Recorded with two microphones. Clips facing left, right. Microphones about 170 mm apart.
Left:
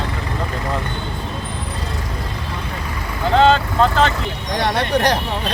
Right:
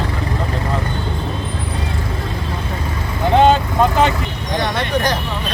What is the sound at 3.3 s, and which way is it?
Speech, 15° right (ahead or behind).